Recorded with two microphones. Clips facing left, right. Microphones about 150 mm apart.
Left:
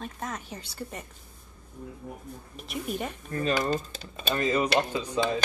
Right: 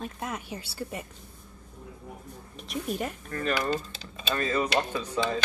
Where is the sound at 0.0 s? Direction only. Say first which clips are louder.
Right 1 dB; 10° right (ahead or behind).